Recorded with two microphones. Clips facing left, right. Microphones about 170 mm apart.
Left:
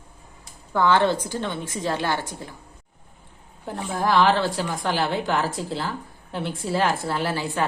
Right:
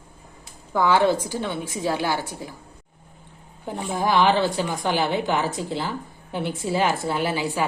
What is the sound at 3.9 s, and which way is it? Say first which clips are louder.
A woman's voice: even; centre (ahead or behind).